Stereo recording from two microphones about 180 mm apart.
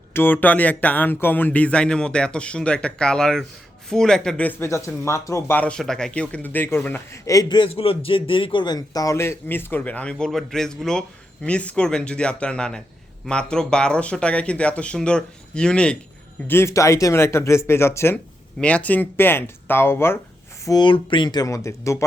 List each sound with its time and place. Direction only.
0.1 s speech: 10° left (ahead or behind)
20.7 s speech: 25° left (ahead or behind)